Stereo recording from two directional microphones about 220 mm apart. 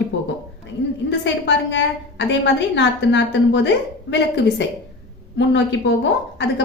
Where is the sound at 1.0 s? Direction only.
55° left (ahead or behind).